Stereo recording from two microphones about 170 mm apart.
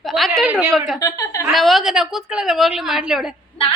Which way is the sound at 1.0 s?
20° left (ahead or behind).